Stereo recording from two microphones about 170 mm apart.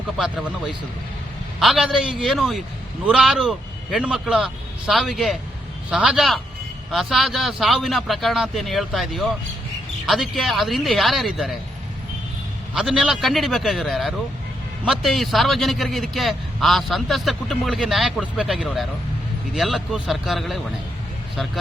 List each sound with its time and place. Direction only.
0.2 s a man's voice: 5° right (ahead or behind)
12.7 s a man's voice: centre (ahead or behind)